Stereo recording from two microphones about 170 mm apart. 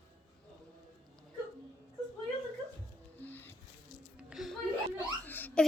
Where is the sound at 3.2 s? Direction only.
10° left (ahead or behind).